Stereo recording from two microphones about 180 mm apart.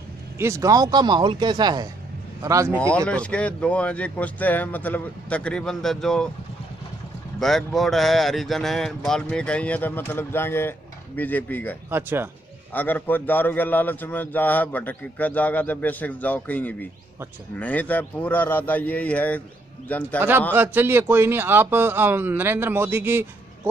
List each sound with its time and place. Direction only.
0.4 s a man's voice: 15° right (ahead or behind)
3.1 s a man's voice: 5° left (ahead or behind)
7.3 s speech: centre (ahead or behind)
11.9 s a man's voice: 10° right (ahead or behind)
12.7 s a man's voice: 10° left (ahead or behind)
20.2 s a man's voice: 10° right (ahead or behind)